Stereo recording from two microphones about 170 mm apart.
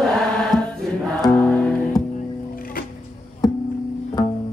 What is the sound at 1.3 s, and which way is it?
Music, 10° left (ahead or behind).